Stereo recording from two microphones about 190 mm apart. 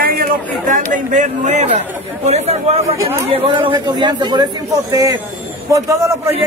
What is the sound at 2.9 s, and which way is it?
Speech, 15° right (ahead or behind).